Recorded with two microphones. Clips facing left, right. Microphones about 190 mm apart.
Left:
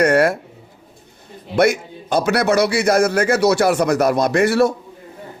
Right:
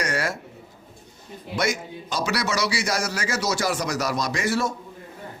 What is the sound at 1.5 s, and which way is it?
A man's voice, 60° left (ahead or behind).